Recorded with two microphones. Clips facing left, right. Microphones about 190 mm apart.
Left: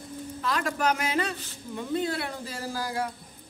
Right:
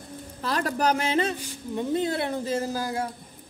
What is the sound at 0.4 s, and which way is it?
Speech, 35° right (ahead or behind).